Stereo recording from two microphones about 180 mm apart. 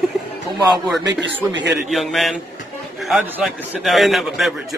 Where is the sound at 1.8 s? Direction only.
Centre (ahead or behind).